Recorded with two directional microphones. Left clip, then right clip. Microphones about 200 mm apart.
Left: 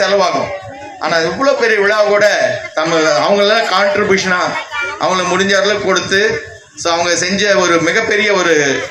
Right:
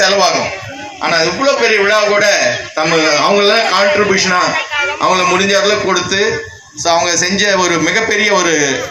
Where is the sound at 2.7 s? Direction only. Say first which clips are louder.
Even; 25° right (ahead or behind).